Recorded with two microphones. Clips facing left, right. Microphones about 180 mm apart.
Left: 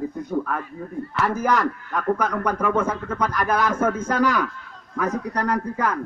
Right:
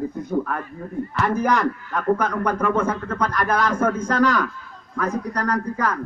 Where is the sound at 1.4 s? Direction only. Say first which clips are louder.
Right 1 dB; centre (ahead or behind).